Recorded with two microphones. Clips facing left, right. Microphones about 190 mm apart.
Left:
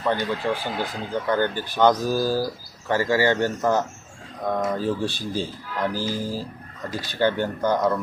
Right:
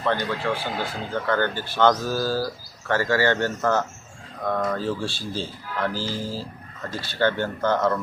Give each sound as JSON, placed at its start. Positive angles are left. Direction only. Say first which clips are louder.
{"t": 0.0, "sound": "speech", "louder": "left 1 dB", "side_deg": 15}